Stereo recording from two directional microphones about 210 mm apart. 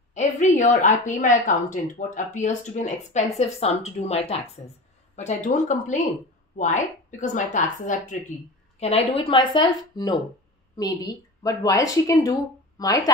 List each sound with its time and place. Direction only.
0.1 s a woman's voice: 35° left (ahead or behind); by 13.1 s 15° left (ahead or behind)